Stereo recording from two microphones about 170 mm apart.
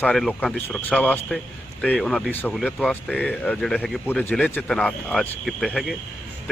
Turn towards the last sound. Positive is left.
turn(degrees=0)  # may be behind; listen again after turning